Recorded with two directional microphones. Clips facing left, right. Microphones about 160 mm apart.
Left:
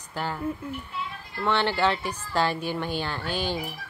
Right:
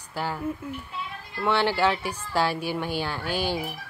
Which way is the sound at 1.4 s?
10° right (ahead or behind).